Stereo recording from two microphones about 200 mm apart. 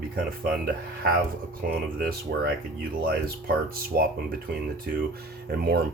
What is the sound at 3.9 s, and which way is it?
Speech, 50° right (ahead or behind).